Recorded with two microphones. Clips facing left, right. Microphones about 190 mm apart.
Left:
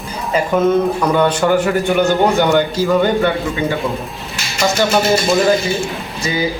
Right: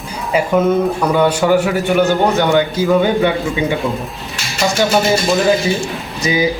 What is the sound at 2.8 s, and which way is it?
Speech, 10° right (ahead or behind).